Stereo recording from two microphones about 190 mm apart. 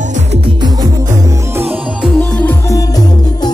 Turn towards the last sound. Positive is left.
turn(degrees=20)  # may be behind; listen again after turning